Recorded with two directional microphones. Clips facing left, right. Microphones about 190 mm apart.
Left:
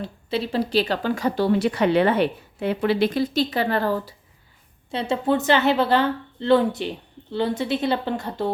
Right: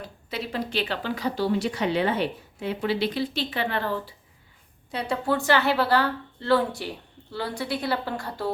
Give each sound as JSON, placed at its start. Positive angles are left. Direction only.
{"t": 0.0, "sound": "speech", "side_deg": 30}
{"t": 4.9, "sound": "a woman's voice", "side_deg": 25}